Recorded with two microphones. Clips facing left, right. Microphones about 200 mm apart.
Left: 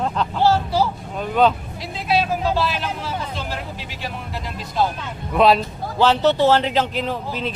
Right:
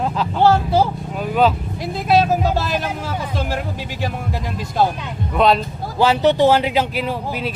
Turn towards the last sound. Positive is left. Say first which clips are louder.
# right 2 dB
turn(degrees=-10)  # may be behind; listen again after turning